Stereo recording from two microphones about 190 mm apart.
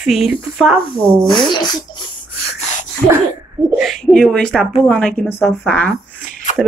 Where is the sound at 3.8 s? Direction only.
Centre (ahead or behind).